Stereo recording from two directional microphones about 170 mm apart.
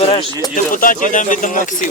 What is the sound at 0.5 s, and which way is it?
Speech, 55° left (ahead or behind).